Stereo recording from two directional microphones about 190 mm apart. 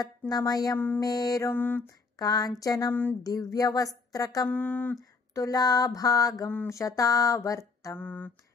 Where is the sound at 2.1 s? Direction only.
20° left (ahead or behind).